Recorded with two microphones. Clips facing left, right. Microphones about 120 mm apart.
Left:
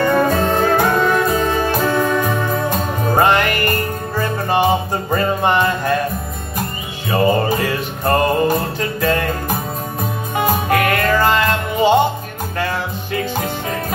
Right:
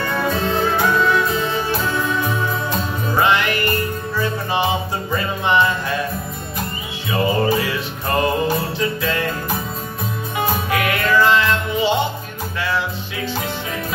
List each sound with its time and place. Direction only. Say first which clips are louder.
0.0 s music: left 6 dB; 50° left (ahead or behind)
7.1 s music: left 3 dB; 45° left (ahead or behind)